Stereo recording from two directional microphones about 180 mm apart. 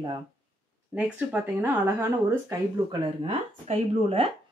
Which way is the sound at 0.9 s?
10° right (ahead or behind).